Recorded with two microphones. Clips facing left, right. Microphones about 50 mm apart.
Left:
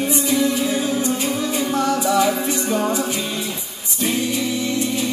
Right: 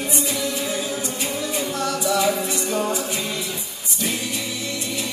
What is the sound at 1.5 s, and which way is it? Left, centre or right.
A capella, left.